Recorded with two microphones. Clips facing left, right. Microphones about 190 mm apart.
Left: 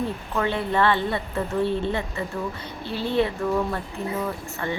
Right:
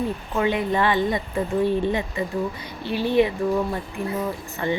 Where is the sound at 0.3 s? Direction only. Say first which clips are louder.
Right 2 dB; 15° right (ahead or behind).